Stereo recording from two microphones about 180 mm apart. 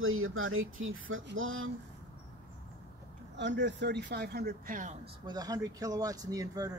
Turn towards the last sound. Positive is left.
turn(degrees=-20)  # may be behind; listen again after turning